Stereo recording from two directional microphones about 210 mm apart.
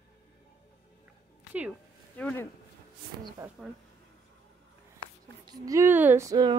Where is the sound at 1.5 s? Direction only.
5° right (ahead or behind).